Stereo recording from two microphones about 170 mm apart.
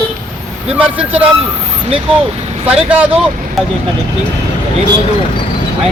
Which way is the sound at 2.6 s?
10° right (ahead or behind).